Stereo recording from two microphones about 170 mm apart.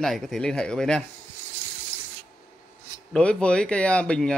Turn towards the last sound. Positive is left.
turn(degrees=5)  # may be behind; listen again after turning